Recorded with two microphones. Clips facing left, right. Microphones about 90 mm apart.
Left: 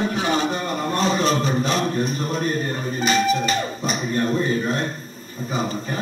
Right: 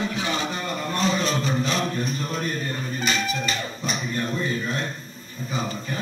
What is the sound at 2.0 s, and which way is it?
Music, 40° left (ahead or behind).